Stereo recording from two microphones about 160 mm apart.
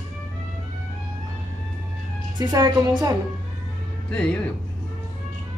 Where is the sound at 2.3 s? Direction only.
25° right (ahead or behind).